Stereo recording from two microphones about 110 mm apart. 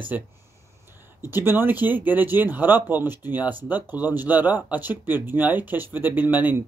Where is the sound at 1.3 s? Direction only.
20° right (ahead or behind).